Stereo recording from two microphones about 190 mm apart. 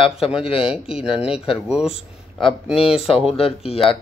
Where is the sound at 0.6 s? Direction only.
5° right (ahead or behind).